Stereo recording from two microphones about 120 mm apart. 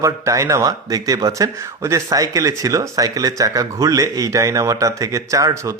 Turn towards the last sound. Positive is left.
turn(degrees=-25)  # may be behind; listen again after turning